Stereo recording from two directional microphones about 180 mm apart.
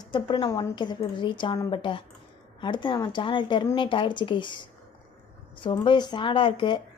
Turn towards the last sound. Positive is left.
turn(degrees=25)  # may be behind; listen again after turning